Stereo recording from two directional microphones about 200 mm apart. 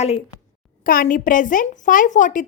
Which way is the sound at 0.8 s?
45° left (ahead or behind).